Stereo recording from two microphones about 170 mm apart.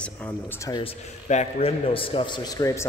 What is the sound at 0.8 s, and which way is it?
A man's voice, 40° left (ahead or behind).